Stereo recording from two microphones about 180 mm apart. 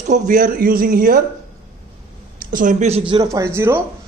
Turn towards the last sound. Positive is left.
turn(degrees=-15)  # may be behind; listen again after turning